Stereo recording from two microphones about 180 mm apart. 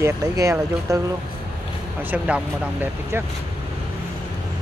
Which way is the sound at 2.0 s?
10° right (ahead or behind).